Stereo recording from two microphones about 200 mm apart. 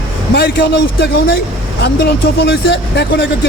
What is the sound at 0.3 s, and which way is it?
Speech, 55° left (ahead or behind).